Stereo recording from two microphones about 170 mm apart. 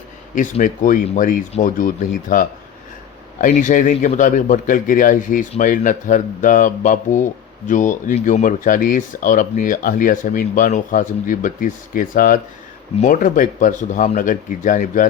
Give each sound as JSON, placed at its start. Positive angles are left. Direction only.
{"t": 0.6, "sound": "speech", "side_deg": 50}